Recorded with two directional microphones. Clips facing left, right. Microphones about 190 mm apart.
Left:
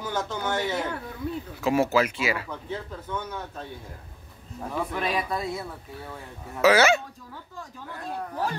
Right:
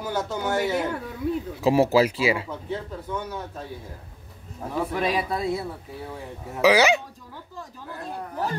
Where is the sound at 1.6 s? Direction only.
35° right (ahead or behind).